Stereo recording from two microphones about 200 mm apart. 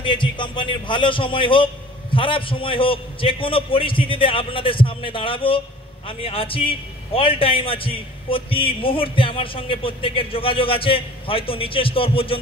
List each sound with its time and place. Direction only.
0.0 s a man's voice: 25° left (ahead or behind)